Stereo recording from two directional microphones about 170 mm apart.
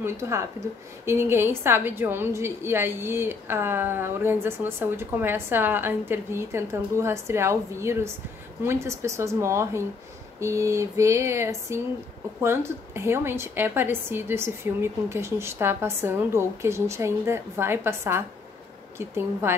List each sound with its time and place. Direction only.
0.0 s a woman's voice: 15° right (ahead or behind)